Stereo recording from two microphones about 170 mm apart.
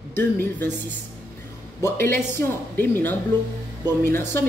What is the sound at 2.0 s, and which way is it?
A man's voice, 15° left (ahead or behind).